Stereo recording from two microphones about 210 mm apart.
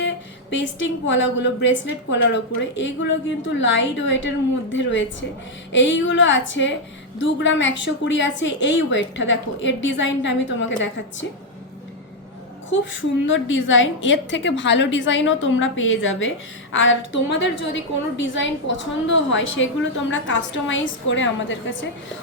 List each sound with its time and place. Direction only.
0.5 s a woman's voice: 60° left (ahead or behind)
12.7 s a woman's voice: 65° left (ahead or behind)